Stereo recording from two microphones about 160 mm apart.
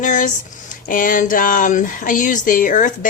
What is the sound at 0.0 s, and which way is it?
Speech, 55° left (ahead or behind).